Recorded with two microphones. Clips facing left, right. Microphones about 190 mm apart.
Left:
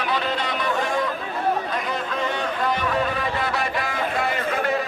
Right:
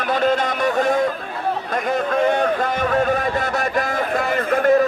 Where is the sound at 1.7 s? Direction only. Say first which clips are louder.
Right 7 dB; 50° right (ahead or behind).